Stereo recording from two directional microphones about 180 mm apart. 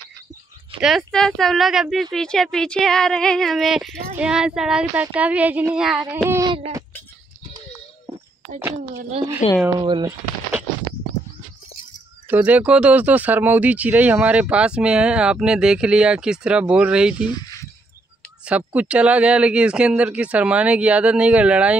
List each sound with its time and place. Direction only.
0.7 s speech: centre (ahead or behind)
6.2 s speech: 15° right (ahead or behind)
9.4 s speech: 40° left (ahead or behind)
9.8 s speech: 25° right (ahead or behind)
12.3 s speech: 10° right (ahead or behind)
17.3 s a sound: 20° left (ahead or behind)
18.4 s speech: 5° right (ahead or behind)